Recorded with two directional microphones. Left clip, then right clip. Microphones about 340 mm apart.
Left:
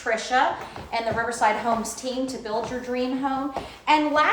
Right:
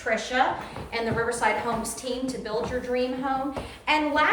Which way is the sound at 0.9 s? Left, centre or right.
Centre.